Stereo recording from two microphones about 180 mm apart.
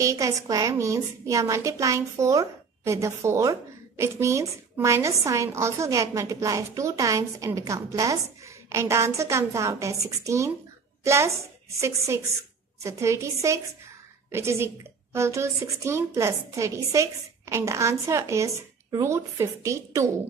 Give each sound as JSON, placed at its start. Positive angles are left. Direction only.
{"t": 0.0, "sound": "a woman's voice", "side_deg": -15}
{"t": 12.8, "sound": "a woman's voice", "side_deg": -15}